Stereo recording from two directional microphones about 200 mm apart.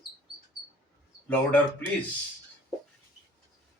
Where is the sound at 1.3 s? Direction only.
10° left (ahead or behind).